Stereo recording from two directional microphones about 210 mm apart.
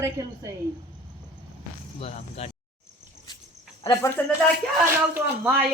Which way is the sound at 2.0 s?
30° left (ahead or behind).